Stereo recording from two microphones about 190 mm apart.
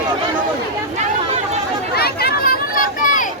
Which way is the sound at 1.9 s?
55° left (ahead or behind).